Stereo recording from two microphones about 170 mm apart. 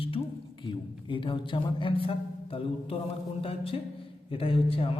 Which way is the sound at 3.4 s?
35° left (ahead or behind).